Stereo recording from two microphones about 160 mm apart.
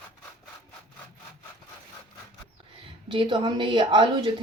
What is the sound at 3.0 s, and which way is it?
A woman's voice, 30° right (ahead or behind).